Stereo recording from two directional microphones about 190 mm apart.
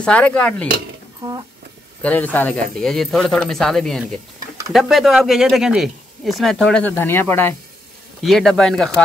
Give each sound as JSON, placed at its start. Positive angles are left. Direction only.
{"t": 0.0, "sound": "speech", "side_deg": 5}
{"t": 1.2, "sound": "speech", "side_deg": -15}
{"t": 2.0, "sound": "speech", "side_deg": 10}